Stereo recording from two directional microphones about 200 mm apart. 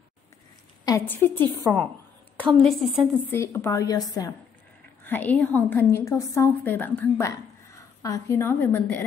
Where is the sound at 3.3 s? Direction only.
10° left (ahead or behind).